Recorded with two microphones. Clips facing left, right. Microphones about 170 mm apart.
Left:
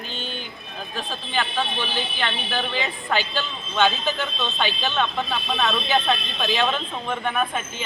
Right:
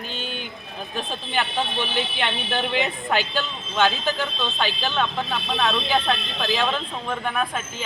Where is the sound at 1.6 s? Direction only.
20° right (ahead or behind).